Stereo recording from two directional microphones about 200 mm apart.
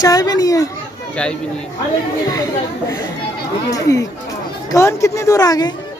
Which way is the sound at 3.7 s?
15° left (ahead or behind).